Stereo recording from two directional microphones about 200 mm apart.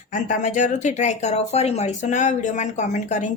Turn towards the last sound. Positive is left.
turn(degrees=35)  # may be behind; listen again after turning